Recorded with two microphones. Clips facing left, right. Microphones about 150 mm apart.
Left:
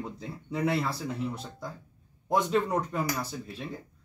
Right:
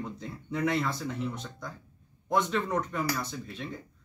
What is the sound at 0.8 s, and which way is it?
Speech, 35° left (ahead or behind).